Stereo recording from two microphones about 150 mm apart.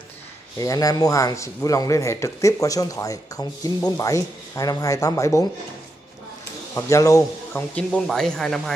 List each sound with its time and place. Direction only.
0.6 s a man's voice: 25° left (ahead or behind)
6.7 s speech: 20° left (ahead or behind)
7.7 s speech: 5° left (ahead or behind)